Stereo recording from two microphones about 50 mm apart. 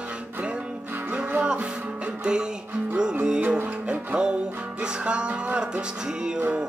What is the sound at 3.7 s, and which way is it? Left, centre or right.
Music, right.